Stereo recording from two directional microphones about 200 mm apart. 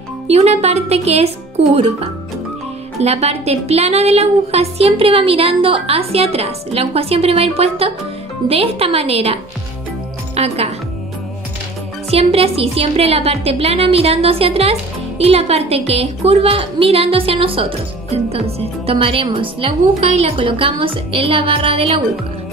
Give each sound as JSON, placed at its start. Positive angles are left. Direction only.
{"t": 0.3, "sound": "speech", "side_deg": -30}
{"t": 3.0, "sound": "a woman's voice", "side_deg": -30}
{"t": 12.1, "sound": "speech", "side_deg": -30}